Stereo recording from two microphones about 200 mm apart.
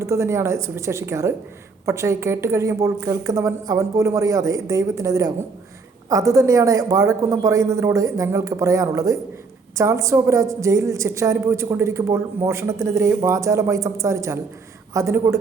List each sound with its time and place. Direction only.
0.0 s a woman's voice: 15° right (ahead or behind)